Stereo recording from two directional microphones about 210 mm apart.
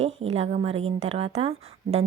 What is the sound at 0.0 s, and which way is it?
A woman's voice, 30° right (ahead or behind).